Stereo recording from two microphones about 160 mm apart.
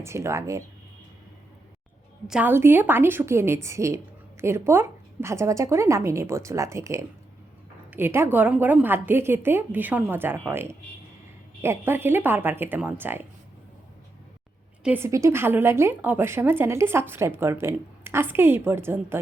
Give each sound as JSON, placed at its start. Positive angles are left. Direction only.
{"t": 0.0, "sound": "a woman's voice", "side_deg": -15}
{"t": 2.2, "sound": "a woman's voice", "side_deg": -5}
{"t": 14.8, "sound": "a woman's voice", "side_deg": -15}